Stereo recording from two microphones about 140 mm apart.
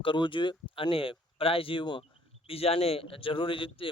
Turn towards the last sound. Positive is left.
turn(degrees=40)  # may be behind; listen again after turning